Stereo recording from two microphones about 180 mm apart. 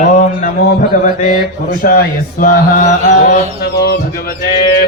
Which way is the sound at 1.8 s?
50° left (ahead or behind).